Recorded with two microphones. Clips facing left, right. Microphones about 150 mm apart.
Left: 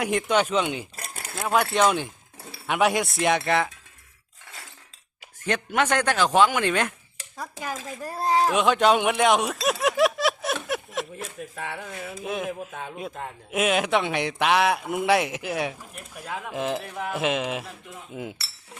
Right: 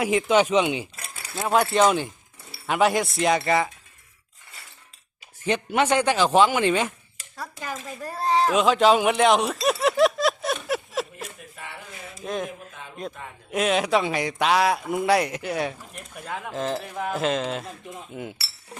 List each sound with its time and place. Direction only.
0.0 s a man's voice: 5° right (ahead or behind)
0.9 s a sound: 40° left (ahead or behind)
1.4 s a man's voice: centre (ahead or behind)
4.4 s chink: 90° left
5.4 s speech: 10° right (ahead or behind)
7.3 s speech: 10° left (ahead or behind)
8.4 s a man's voice: centre (ahead or behind)
9.8 s a sound: centre (ahead or behind)
12.2 s a man's voice: 5° left (ahead or behind)
13.5 s a man's voice: centre (ahead or behind)
18.1 s speech: 20° left (ahead or behind)